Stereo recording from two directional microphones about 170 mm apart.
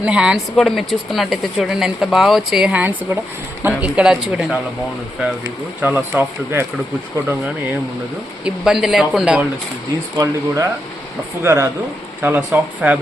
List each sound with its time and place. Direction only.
0.0 s a man's voice: 5° right (ahead or behind)
5.8 s a man's voice: 10° right (ahead or behind)
8.4 s speech: 5° right (ahead or behind)
10.2 s a man's voice: 20° right (ahead or behind)